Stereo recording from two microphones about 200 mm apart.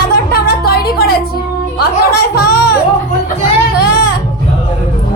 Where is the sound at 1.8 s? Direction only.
50° left (ahead or behind).